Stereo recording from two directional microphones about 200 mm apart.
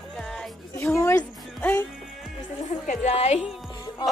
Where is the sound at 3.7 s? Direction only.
20° left (ahead or behind).